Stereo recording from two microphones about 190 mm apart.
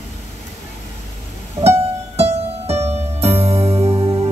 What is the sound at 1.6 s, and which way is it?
Music, 35° right (ahead or behind).